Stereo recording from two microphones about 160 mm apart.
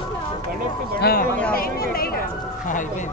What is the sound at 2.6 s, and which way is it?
Speech, 55° left (ahead or behind).